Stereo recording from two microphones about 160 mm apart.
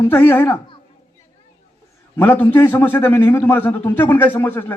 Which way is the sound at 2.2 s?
10° left (ahead or behind).